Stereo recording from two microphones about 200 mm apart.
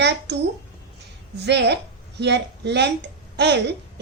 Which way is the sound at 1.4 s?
60° right (ahead or behind).